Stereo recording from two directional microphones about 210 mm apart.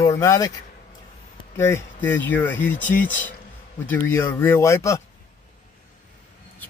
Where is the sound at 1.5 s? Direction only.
10° left (ahead or behind).